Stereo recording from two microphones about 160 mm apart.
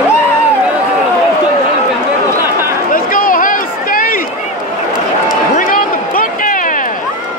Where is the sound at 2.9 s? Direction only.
60° left (ahead or behind).